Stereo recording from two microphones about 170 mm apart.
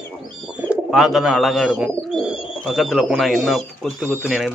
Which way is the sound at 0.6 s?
Centre (ahead or behind).